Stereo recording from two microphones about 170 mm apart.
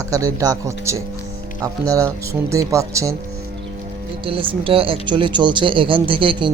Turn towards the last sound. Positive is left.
turn(degrees=-30)  # may be behind; listen again after turning